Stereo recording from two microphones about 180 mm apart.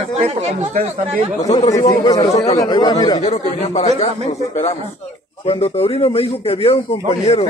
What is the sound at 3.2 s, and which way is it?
A man's voice, 40° left (ahead or behind).